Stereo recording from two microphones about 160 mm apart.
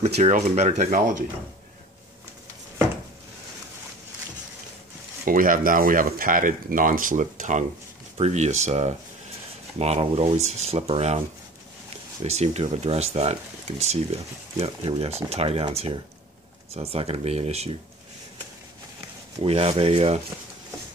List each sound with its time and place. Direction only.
0.2 s speech: 45° right (ahead or behind)
5.2 s speech: 60° right (ahead or behind); by 11.1 s 40° right (ahead or behind)
12.2 s speech: 40° right (ahead or behind)
19.4 s speech: 35° right (ahead or behind)